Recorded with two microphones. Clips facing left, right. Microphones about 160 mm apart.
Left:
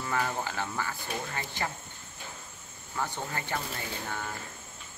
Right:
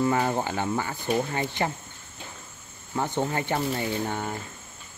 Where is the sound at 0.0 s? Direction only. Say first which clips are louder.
Right 7 dB; 25° right (ahead or behind).